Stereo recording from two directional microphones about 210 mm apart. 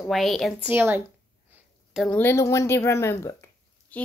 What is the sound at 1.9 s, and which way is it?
A woman's voice, 5° left (ahead or behind).